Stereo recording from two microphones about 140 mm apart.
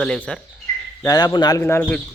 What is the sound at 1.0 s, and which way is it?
Speech, 30° left (ahead or behind).